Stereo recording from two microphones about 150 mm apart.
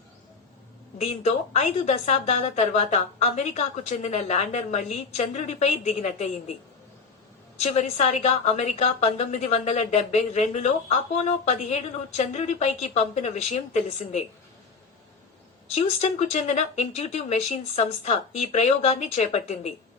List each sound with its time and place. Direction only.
0.9 s a woman's voice: 45° left (ahead or behind)
7.6 s a woman's voice: 50° left (ahead or behind)
15.7 s a woman's voice: 45° left (ahead or behind)